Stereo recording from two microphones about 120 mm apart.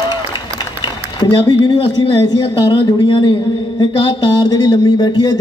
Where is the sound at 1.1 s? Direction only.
35° left (ahead or behind).